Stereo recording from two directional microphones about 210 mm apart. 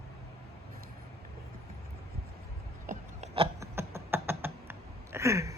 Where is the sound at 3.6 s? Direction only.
10° right (ahead or behind).